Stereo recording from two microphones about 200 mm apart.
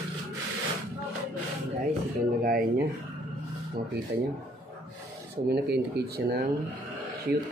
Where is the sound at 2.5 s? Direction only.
45° right (ahead or behind).